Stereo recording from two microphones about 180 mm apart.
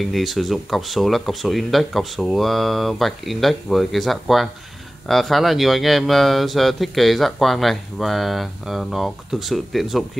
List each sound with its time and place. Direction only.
0.0 s speech: centre (ahead or behind)